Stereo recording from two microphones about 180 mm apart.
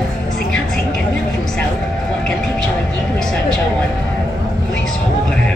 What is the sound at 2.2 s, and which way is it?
Music, 5° left (ahead or behind).